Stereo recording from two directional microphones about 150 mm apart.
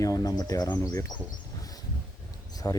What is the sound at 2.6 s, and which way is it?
Speech, 20° left (ahead or behind).